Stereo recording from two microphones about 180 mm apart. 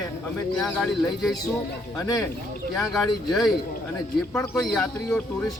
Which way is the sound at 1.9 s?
20° left (ahead or behind).